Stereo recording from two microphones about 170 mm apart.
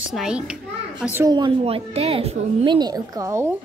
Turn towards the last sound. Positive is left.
turn(degrees=-15)  # may be behind; listen again after turning